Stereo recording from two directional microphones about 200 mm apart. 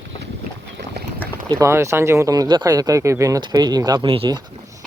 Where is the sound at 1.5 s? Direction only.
15° right (ahead or behind).